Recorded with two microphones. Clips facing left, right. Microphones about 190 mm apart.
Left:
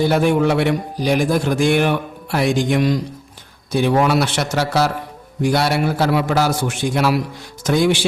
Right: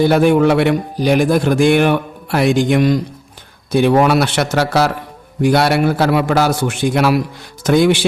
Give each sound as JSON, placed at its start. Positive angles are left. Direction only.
{"t": 0.1, "sound": "a man's voice", "side_deg": -60}